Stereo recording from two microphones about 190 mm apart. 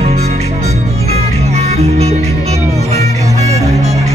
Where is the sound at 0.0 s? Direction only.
35° right (ahead or behind).